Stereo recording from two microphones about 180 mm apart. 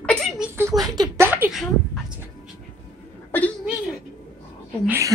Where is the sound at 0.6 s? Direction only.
15° right (ahead or behind).